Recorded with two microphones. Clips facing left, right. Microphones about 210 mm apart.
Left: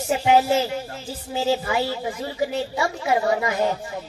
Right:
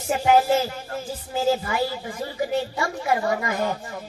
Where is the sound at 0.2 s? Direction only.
50° right (ahead or behind).